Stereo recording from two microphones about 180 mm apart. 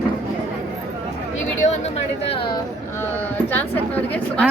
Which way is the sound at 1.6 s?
35° left (ahead or behind).